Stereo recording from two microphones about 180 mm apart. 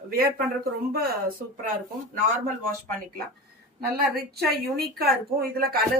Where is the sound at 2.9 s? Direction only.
55° right (ahead or behind).